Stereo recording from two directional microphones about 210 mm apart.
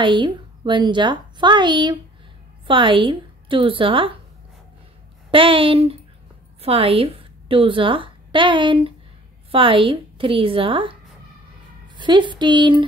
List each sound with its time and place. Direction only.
0.0 s a woman's voice: 20° right (ahead or behind)
5.3 s a woman's voice: 25° right (ahead or behind)
12.0 s a woman's voice: 20° right (ahead or behind)